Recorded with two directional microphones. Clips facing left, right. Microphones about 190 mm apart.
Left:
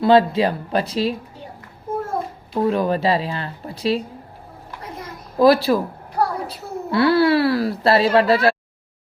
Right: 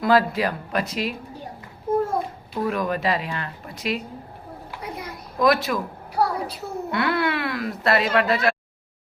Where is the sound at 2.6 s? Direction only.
30° left (ahead or behind).